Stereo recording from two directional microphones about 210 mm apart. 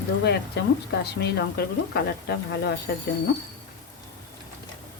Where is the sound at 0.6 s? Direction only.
50° left (ahead or behind).